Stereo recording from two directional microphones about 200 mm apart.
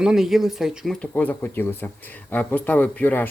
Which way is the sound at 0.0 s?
Centre (ahead or behind).